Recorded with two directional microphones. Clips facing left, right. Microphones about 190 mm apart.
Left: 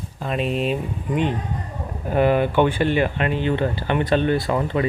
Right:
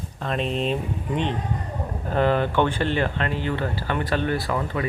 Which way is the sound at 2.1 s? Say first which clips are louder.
Left 3 dB; 10° left (ahead or behind).